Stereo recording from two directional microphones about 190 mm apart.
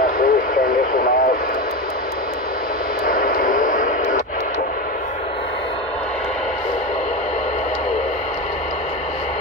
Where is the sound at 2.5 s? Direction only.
45° left (ahead or behind).